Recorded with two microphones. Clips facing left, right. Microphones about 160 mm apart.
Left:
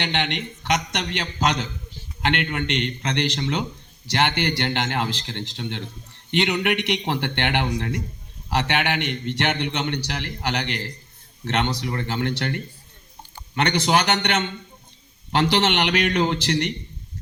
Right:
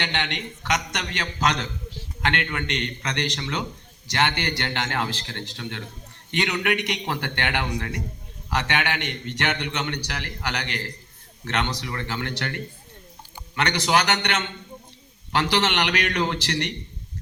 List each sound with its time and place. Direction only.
0.0 s a man's voice: 20° left (ahead or behind)
13.6 s a man's voice: 20° left (ahead or behind)